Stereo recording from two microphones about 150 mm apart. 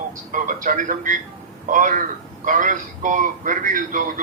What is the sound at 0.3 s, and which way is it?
A man's voice, 60° right (ahead or behind).